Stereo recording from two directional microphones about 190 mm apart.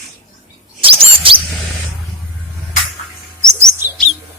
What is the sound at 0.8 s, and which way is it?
Chirp, 30° right (ahead or behind).